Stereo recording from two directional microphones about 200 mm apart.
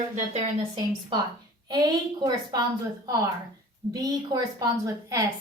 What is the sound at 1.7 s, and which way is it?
A woman's voice, 20° right (ahead or behind).